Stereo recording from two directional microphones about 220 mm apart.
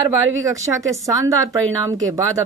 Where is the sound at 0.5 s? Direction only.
15° right (ahead or behind).